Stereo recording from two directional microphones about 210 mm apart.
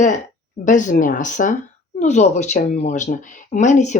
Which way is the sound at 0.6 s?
35° left (ahead or behind).